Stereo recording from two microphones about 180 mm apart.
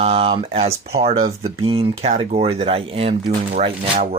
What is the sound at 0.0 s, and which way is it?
Speech, 35° right (ahead or behind).